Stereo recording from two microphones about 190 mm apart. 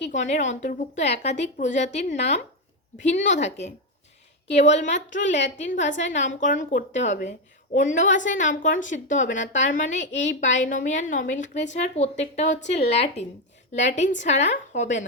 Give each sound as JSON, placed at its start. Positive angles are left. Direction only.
{"t": 0.0, "sound": "a woman's voice", "side_deg": 40}